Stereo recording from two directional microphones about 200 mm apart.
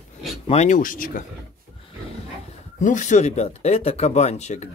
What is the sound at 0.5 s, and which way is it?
Speech, 35° left (ahead or behind).